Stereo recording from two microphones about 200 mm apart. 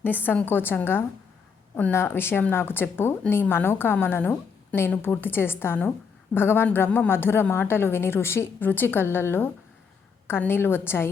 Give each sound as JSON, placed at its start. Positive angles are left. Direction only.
{"t": 0.0, "sound": "a woman's voice", "side_deg": 10}